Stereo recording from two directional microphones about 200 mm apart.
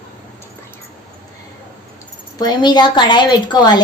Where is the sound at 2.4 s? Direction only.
20° left (ahead or behind).